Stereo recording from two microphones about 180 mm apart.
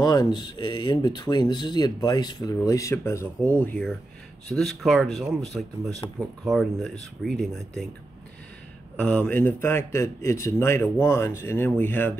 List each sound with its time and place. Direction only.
0.0 s speech: 20° left (ahead or behind); by 7.9 s centre (ahead or behind)
8.9 s a man's voice: 5° left (ahead or behind)